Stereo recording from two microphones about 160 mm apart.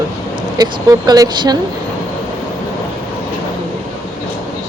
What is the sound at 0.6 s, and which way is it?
Speech, 25° right (ahead or behind).